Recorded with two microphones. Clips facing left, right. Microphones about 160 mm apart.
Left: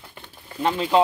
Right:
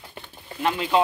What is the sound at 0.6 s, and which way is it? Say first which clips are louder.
Speech: left 2 dB; 30° left (ahead or behind).